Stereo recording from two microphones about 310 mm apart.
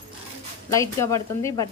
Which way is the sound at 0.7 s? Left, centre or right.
Centre.